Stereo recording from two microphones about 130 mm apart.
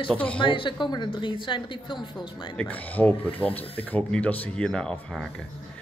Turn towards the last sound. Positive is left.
turn(degrees=5)  # may be behind; listen again after turning